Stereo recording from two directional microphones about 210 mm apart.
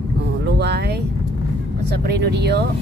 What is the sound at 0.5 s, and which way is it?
Speech, 50° right (ahead or behind).